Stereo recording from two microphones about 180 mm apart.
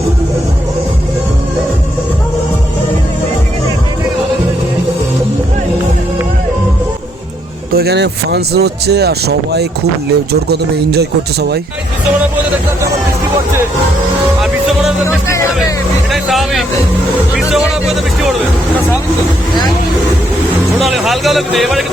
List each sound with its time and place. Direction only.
7.7 s speech: 60° right (ahead or behind)
14.4 s music: centre (ahead or behind)
15.0 s speech: 15° left (ahead or behind)
16.1 s speech: centre (ahead or behind)
20.8 s speech: centre (ahead or behind)